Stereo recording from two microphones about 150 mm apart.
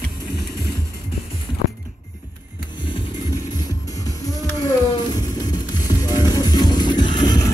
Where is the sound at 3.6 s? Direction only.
25° left (ahead or behind).